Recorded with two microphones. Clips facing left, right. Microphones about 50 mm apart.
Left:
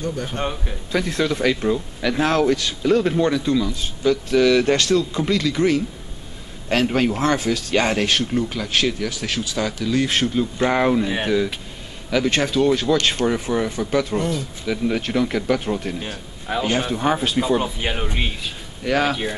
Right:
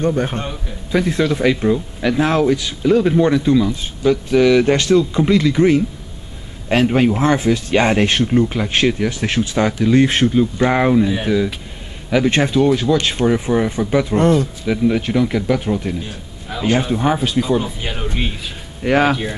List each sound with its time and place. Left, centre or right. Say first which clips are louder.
0.0 s a man's voice: right 8 dB; right
0.9 s speech: right 4 dB; centre
10.3 s speech: right 4 dB; centre
12.1 s speech: right 4 dB; centre
12.6 s speech: right 3 dB; centre
14.1 s speech: right 9 dB; right
14.7 s speech: right 4 dB; centre
16.5 s a sound: left 3 dB; centre
17.0 s speech: right 3 dB; centre
17.4 s speech: right 2 dB; centre
18.9 s speech: right 5 dB; right